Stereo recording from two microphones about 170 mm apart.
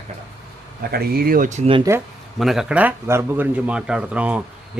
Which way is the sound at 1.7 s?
20° right (ahead or behind).